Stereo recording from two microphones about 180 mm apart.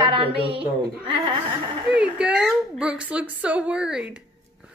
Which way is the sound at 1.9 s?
5° right (ahead or behind).